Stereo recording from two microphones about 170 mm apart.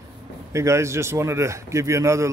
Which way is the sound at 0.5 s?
15° right (ahead or behind).